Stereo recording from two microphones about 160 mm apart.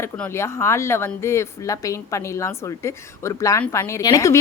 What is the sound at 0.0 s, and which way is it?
A woman's voice, 15° left (ahead or behind).